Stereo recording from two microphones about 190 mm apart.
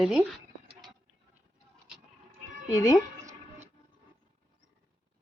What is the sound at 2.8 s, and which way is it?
Speech, 15° left (ahead or behind).